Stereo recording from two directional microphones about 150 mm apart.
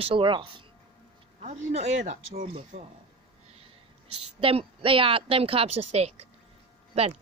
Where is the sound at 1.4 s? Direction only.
50° right (ahead or behind).